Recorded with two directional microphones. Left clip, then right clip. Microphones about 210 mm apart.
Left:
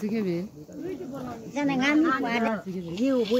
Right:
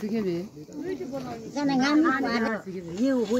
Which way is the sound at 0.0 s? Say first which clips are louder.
Even; 50° left (ahead or behind).